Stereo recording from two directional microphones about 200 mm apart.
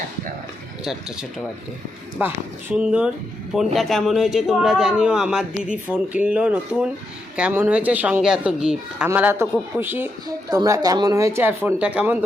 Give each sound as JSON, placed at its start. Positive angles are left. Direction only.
{"t": 2.1, "sound": "a man's voice", "side_deg": -5}